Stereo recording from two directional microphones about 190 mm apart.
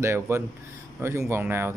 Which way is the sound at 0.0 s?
15° right (ahead or behind).